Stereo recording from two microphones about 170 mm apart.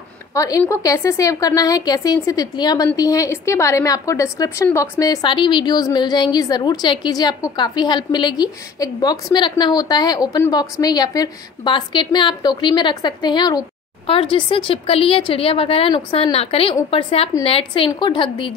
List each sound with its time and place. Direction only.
0.3 s a woman's voice: 20° left (ahead or behind)